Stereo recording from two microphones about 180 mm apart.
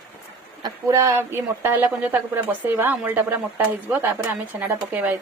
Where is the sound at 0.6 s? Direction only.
15° right (ahead or behind).